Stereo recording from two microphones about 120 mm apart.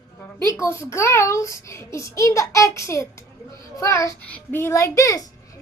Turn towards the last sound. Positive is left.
turn(degrees=30)  # may be behind; listen again after turning